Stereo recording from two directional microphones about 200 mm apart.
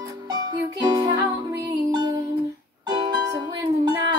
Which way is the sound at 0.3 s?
20° right (ahead or behind).